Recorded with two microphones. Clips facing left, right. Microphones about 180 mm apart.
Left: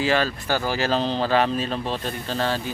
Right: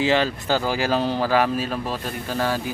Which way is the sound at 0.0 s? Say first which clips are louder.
Right 2 dB; 20° right (ahead or behind).